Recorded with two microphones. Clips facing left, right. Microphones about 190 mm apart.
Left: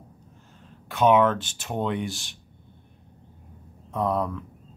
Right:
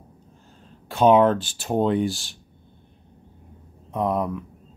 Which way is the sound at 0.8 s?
30° right (ahead or behind).